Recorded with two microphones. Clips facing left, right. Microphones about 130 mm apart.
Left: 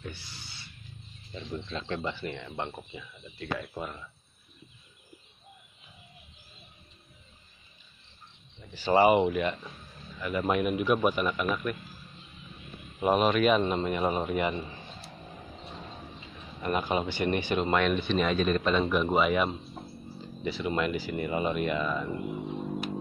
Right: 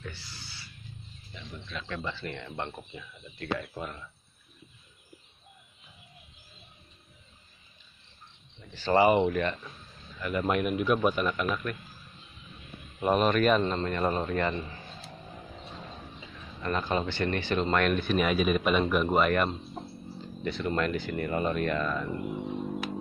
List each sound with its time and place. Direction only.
0.0 s a sound: 20° left (ahead or behind)
1.3 s speech: 30° left (ahead or behind)
2.1 s speech: 10° left (ahead or behind)
8.7 s a man's voice: 10° left (ahead or behind)
13.0 s a man's voice: 5° left (ahead or behind)
16.6 s a man's voice: 15° left (ahead or behind)
17.7 s a man's voice: centre (ahead or behind)